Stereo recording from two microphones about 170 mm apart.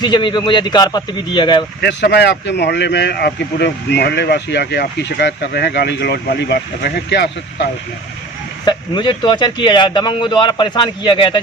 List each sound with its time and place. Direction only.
0.0 s a man's voice: 25° left (ahead or behind)
1.8 s speech: 90° left
8.6 s a man's voice: 25° left (ahead or behind)